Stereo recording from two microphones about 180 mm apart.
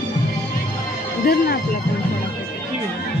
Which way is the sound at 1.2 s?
60° left (ahead or behind).